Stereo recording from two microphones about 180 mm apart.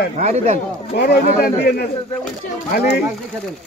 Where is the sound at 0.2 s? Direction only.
40° right (ahead or behind).